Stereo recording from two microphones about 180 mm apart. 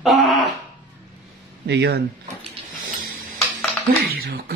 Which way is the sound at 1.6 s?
70° right (ahead or behind).